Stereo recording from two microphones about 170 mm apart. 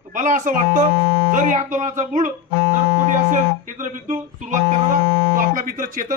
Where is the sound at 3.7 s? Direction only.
50° right (ahead or behind).